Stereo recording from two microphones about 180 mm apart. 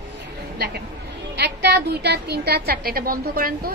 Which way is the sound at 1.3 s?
65° right (ahead or behind).